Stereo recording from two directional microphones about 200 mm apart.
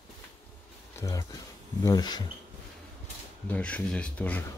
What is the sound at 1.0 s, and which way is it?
Speech, 15° left (ahead or behind).